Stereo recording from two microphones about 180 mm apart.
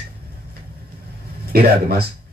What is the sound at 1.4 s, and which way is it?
Speech, 55° right (ahead or behind).